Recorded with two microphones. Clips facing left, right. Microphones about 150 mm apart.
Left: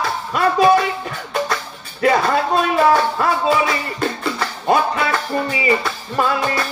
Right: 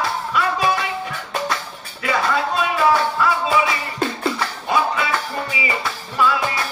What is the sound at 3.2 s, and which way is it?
Music, 45° left (ahead or behind).